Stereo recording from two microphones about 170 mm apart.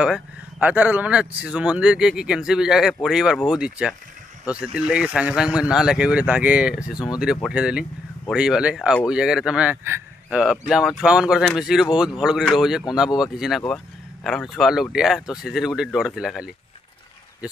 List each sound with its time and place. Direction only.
0.0 s speech: 10° right (ahead or behind)